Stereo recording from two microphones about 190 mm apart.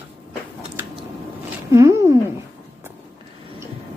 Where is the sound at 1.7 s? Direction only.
15° right (ahead or behind).